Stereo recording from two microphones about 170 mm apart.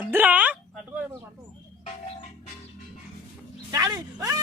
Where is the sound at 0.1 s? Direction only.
10° right (ahead or behind).